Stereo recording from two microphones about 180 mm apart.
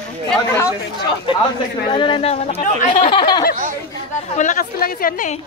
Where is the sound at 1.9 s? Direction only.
25° left (ahead or behind).